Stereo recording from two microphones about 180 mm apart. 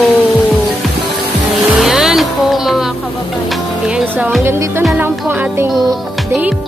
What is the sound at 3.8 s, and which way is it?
Speech, 10° right (ahead or behind).